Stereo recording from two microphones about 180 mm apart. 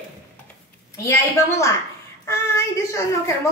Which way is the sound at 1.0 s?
15° left (ahead or behind).